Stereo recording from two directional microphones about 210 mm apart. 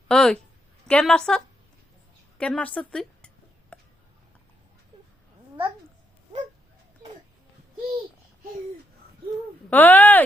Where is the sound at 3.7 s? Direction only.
5° left (ahead or behind).